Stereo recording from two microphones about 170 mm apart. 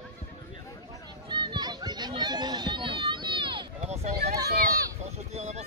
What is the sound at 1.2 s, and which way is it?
Children playing, 25° right (ahead or behind).